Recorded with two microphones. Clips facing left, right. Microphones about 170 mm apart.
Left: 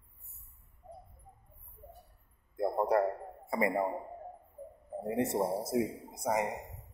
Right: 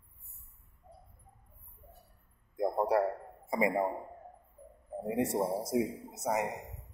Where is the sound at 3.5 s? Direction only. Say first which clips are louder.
Right 1 dB; 15° right (ahead or behind).